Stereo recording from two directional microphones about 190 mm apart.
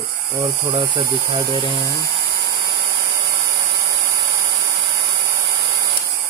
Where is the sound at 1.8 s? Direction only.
15° right (ahead or behind).